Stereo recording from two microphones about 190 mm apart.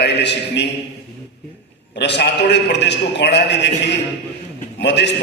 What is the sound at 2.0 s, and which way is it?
A man's voice, 65° left (ahead or behind).